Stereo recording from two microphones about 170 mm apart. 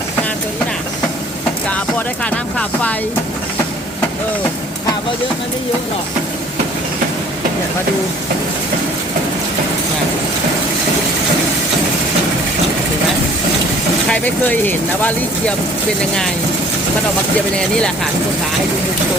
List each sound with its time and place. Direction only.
1.7 s speech: 5° left (ahead or behind)
14.1 s speech: 10° left (ahead or behind)
17.6 s speech: 5° left (ahead or behind)